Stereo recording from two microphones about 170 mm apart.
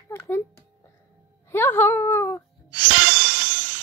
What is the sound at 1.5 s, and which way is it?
Speech, 10° left (ahead or behind).